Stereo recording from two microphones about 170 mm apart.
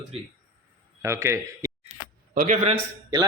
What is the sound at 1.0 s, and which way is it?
Speech, 15° right (ahead or behind).